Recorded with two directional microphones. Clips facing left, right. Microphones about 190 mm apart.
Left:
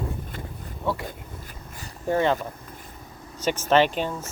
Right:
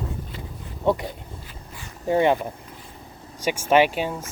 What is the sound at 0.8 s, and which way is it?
Speech, 20° right (ahead or behind).